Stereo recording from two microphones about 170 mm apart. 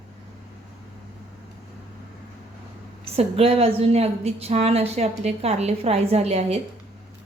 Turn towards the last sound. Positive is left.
turn(degrees=-35)  # may be behind; listen again after turning